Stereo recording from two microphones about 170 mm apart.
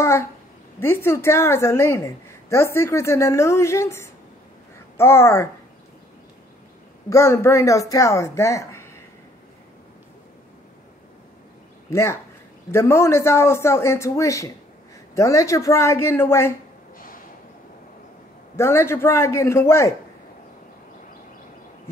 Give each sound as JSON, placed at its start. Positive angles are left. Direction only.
{"t": 0.0, "sound": "a woman's voice", "side_deg": 15}
{"t": 7.1, "sound": "a woman's voice", "side_deg": 15}
{"t": 11.9, "sound": "a woman's voice", "side_deg": 15}
{"t": 18.6, "sound": "a woman's voice", "side_deg": 15}